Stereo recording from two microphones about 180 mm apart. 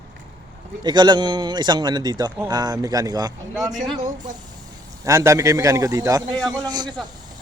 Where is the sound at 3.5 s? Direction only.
Centre (ahead or behind).